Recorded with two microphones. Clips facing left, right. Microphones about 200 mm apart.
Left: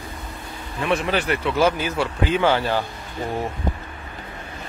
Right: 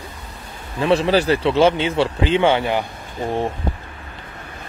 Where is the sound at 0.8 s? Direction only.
30° right (ahead or behind).